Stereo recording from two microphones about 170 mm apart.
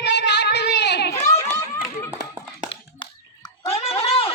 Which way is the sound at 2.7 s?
30° left (ahead or behind).